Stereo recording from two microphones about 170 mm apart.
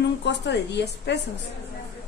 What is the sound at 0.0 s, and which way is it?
A woman's voice, 90° left.